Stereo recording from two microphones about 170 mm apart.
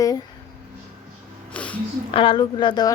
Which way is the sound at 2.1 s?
30° left (ahead or behind).